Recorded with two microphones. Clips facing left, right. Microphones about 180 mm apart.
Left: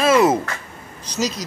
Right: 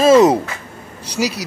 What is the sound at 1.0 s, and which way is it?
Speech, 10° right (ahead or behind).